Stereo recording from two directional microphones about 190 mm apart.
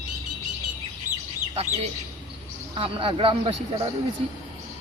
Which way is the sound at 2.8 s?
30° right (ahead or behind).